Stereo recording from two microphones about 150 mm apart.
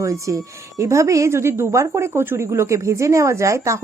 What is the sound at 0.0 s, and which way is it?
A woman's voice, 20° right (ahead or behind).